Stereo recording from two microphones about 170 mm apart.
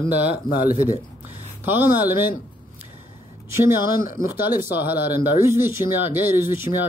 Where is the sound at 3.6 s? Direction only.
15° right (ahead or behind).